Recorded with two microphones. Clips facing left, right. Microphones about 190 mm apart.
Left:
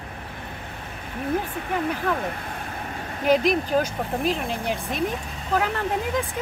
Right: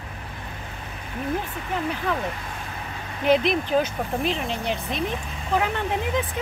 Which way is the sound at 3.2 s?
45° left (ahead or behind).